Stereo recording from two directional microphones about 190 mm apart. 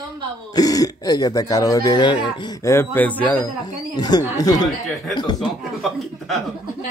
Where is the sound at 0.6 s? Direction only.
20° left (ahead or behind).